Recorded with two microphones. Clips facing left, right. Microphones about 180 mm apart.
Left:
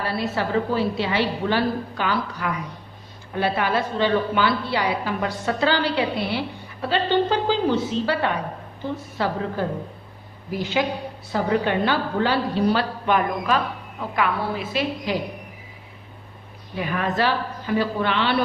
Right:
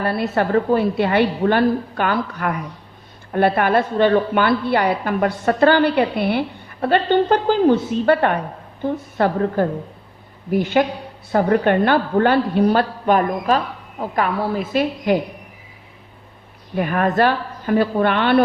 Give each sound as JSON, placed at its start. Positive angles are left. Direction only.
{"t": 0.0, "sound": "a woman's voice", "side_deg": -55}
{"t": 16.7, "sound": "a woman's voice", "side_deg": -50}